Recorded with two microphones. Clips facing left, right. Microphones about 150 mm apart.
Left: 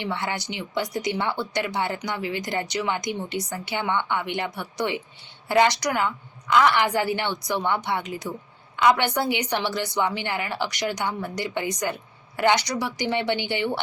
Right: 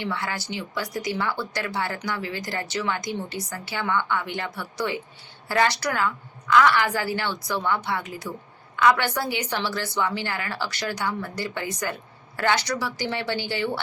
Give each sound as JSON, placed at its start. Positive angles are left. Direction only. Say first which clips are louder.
{"t": 0.0, "sound": "a woman's voice", "louder": "left 1 dB", "side_deg": 20}